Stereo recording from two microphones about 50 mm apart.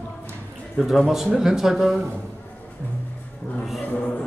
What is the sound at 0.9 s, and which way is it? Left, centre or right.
Speech, centre.